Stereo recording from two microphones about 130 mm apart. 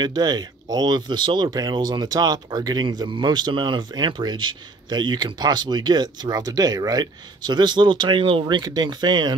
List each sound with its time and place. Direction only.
0.0 s speech: 30° right (ahead or behind)